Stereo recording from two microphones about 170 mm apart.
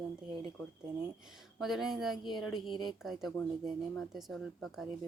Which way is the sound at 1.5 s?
Centre (ahead or behind).